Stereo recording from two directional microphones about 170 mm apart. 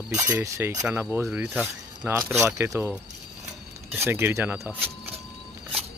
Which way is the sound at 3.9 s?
15° right (ahead or behind).